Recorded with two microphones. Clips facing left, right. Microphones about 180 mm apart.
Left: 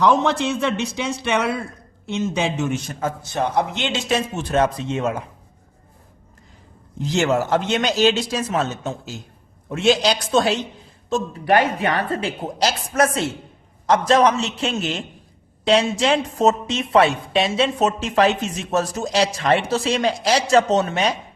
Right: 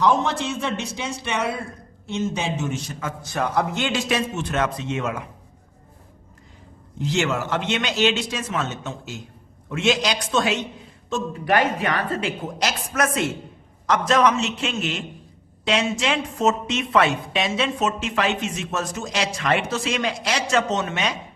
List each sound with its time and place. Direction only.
0.0 s a man's voice: 75° left (ahead or behind)
3.3 s speech: 20° left (ahead or behind)
4.4 s a woman's voice: 35° left (ahead or behind)
7.0 s a woman's voice: 40° left (ahead or behind)